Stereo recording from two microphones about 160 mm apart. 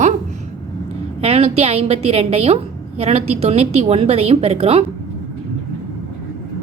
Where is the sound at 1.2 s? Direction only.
40° right (ahead or behind).